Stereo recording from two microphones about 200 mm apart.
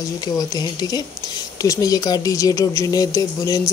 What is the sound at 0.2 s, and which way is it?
Speech, 20° left (ahead or behind).